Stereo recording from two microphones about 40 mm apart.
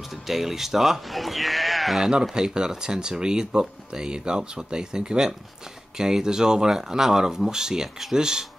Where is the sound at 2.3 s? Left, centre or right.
Centre.